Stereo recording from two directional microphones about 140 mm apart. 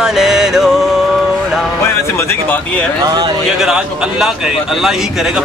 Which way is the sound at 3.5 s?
5° right (ahead or behind).